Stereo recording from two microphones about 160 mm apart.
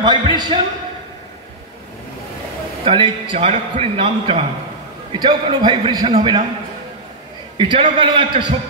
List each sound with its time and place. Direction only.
0.0 s a man's voice: 25° right (ahead or behind)
2.8 s a man's voice: 35° right (ahead or behind)
7.5 s a man's voice: 30° right (ahead or behind)